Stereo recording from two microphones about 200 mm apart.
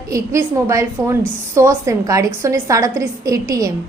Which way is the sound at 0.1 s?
15° right (ahead or behind).